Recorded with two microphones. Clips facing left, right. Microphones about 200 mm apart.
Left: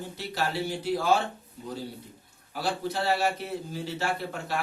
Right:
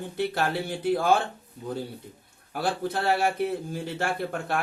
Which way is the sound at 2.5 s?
55° right (ahead or behind).